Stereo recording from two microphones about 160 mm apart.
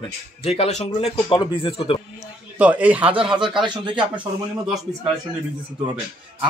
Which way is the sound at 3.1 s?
35° right (ahead or behind).